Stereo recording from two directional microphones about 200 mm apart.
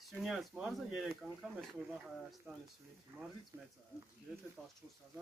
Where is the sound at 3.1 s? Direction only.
10° right (ahead or behind).